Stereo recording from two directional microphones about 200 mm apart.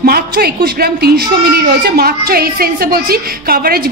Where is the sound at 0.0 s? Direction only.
50° right (ahead or behind).